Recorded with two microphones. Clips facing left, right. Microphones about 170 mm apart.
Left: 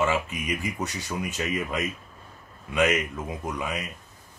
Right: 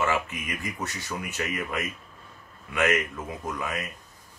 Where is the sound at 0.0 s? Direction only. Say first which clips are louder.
Left 2 dB; 15° left (ahead or behind).